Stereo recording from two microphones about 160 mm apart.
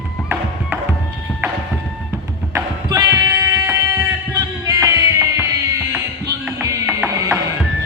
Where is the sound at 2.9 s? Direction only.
20° right (ahead or behind).